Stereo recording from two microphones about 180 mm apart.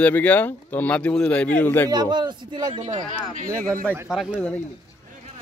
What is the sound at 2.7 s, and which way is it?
Speech, 45° right (ahead or behind).